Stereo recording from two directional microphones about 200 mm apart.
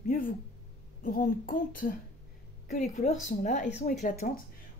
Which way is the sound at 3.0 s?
35° left (ahead or behind).